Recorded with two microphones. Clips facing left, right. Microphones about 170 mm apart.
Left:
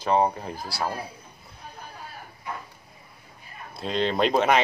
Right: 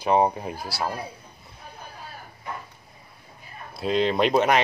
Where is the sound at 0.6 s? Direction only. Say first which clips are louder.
Left 1 dB; centre (ahead or behind).